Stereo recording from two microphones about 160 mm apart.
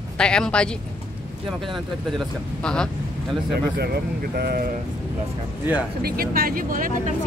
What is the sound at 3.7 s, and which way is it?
Speech, 85° right.